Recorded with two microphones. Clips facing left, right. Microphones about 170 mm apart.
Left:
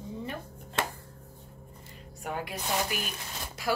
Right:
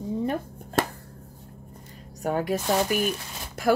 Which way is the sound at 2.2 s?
40° right (ahead or behind).